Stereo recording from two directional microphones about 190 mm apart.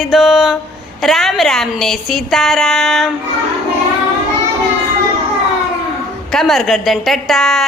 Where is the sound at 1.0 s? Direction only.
Centre (ahead or behind).